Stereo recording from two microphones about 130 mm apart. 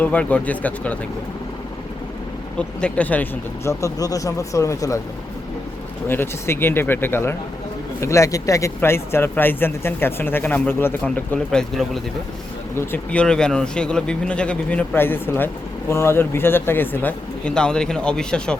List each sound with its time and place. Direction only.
0.0 s speech: 10° left (ahead or behind)
2.6 s speech: 10° left (ahead or behind); by 4.9 s 25° left (ahead or behind)
6.1 s speech: 20° left (ahead or behind)
12.7 s speech: 20° left (ahead or behind)
13.1 s speech: 5° left (ahead or behind)